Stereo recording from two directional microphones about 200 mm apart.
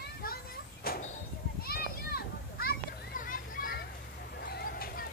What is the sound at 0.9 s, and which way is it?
Clip-clop, 50° left (ahead or behind).